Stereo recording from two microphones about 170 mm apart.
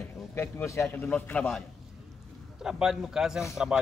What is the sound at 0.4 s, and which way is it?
A man's voice, 15° left (ahead or behind).